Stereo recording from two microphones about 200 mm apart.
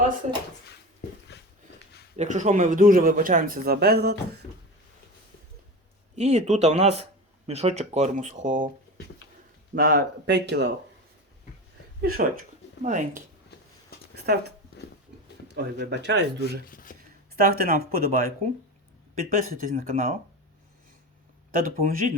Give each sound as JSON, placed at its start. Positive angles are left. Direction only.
{"t": 1.3, "sound": "a sound", "side_deg": 55}
{"t": 2.1, "sound": "speech", "side_deg": -40}
{"t": 6.1, "sound": "speech", "side_deg": -35}
{"t": 9.7, "sound": "speech", "side_deg": -55}
{"t": 12.1, "sound": "speech", "side_deg": -40}
{"t": 15.5, "sound": "speech", "side_deg": -60}
{"t": 16.6, "sound": "speech", "side_deg": 45}
{"t": 17.3, "sound": "speech", "side_deg": -45}
{"t": 21.5, "sound": "speech", "side_deg": -45}